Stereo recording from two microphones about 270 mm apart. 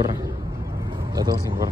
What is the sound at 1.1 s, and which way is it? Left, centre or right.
Speech, centre.